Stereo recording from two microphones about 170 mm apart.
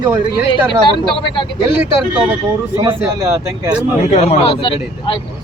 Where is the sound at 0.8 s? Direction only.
30° left (ahead or behind).